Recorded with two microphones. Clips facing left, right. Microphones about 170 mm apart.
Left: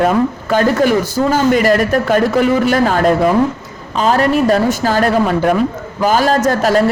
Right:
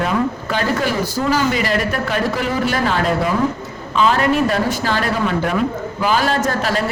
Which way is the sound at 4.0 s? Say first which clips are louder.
Left 3 dB; 40° left (ahead or behind).